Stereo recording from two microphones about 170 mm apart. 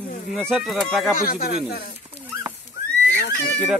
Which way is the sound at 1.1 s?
60° left (ahead or behind).